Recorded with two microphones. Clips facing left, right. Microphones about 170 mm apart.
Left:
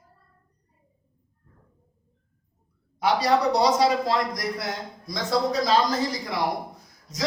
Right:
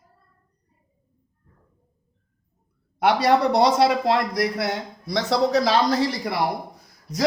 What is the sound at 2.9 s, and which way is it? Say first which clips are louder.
A man's voice: right 3 dB; 60° right (ahead or behind).